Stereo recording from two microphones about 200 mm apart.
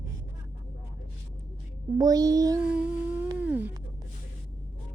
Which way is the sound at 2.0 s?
20° right (ahead or behind).